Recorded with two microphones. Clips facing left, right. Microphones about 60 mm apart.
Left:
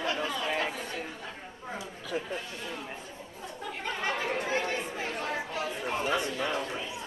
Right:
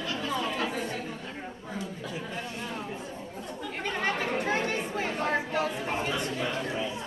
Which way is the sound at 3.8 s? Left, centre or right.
Right.